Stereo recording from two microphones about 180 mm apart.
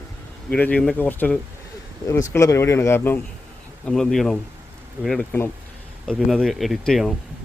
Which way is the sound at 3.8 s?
5° left (ahead or behind).